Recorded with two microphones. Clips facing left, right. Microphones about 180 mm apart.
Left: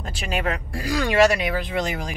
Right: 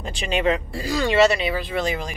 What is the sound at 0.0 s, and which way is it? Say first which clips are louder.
Speech: right 4 dB; 5° left (ahead or behind).